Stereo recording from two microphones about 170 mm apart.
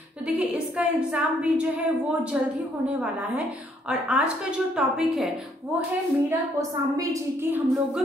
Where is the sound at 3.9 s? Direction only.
5° right (ahead or behind).